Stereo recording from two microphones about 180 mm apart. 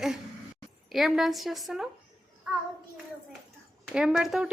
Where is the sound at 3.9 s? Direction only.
5° right (ahead or behind).